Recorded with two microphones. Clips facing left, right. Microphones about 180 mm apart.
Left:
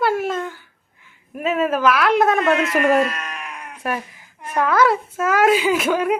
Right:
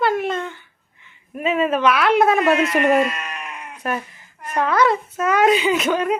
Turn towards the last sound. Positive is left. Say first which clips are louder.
# left 1 dB
turn(degrees=5)  # may be behind; listen again after turning